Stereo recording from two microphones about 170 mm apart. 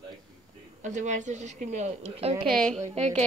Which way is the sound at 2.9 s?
40° right (ahead or behind).